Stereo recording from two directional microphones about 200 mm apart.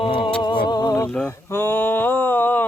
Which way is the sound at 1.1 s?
10° left (ahead or behind).